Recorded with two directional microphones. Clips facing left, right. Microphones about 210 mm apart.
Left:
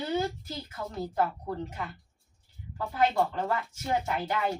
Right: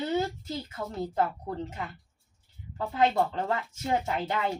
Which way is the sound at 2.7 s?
20° right (ahead or behind).